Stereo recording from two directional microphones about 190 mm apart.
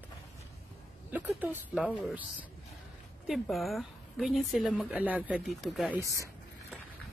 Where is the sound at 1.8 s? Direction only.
5° right (ahead or behind).